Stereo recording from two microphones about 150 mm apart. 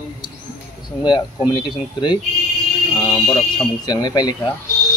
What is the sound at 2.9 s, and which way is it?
Speech, 25° left (ahead or behind).